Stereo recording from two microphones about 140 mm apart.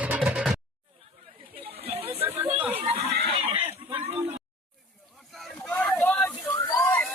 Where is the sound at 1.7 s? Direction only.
45° right (ahead or behind).